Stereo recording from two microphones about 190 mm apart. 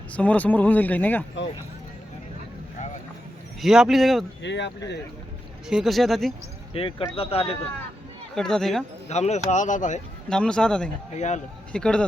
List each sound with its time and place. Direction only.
0.1 s speech: 5° left (ahead or behind)
3.6 s speech: centre (ahead or behind)
4.4 s speech: 70° left (ahead or behind)
5.6 s speech: centre (ahead or behind)
6.7 s speech: 30° left (ahead or behind)
8.4 s speech: centre (ahead or behind)
9.0 s speech: 35° left (ahead or behind)
10.2 s speech: 5° left (ahead or behind)
11.1 s speech: 40° left (ahead or behind)
11.7 s speech: 5° left (ahead or behind)